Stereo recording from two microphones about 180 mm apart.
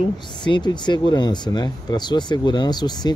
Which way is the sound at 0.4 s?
25° left (ahead or behind).